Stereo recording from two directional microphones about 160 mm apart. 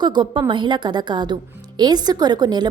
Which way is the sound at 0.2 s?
30° right (ahead or behind).